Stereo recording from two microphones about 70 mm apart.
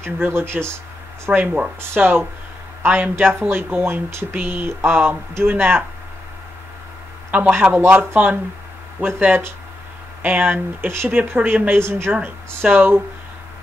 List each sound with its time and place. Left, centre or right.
0.0 s speech: right
1.3 s speech: centre
2.0 s speech: right
7.2 s speech: right